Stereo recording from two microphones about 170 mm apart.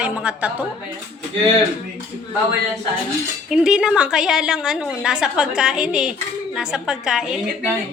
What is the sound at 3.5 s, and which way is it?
A woman's voice, 5° right (ahead or behind).